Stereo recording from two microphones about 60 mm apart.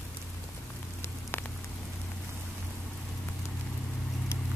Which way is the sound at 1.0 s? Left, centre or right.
Left.